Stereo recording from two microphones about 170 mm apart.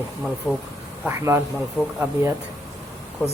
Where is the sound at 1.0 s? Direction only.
15° right (ahead or behind).